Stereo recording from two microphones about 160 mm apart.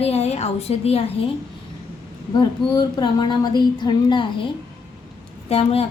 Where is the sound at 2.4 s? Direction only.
25° left (ahead or behind).